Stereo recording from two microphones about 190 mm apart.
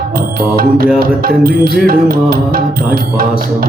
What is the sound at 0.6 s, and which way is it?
Music, 50° right (ahead or behind).